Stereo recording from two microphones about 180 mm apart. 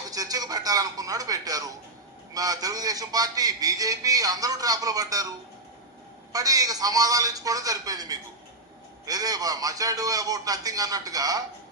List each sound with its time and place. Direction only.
0.1 s a man's voice: 20° right (ahead or behind)
6.3 s a man's voice: 20° right (ahead or behind)